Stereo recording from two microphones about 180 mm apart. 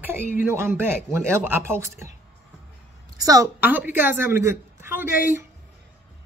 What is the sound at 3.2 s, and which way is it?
A woman's voice, 20° right (ahead or behind).